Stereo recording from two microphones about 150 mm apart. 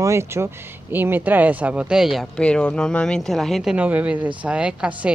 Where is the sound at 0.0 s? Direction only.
20° right (ahead or behind).